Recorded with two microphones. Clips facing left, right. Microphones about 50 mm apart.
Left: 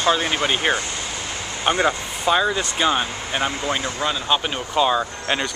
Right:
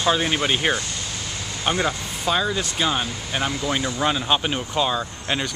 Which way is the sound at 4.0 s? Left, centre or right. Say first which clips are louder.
Right 1 dB; centre.